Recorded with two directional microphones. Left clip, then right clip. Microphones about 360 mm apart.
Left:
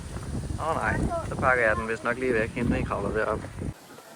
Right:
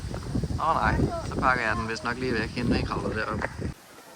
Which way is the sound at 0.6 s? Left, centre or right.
Centre.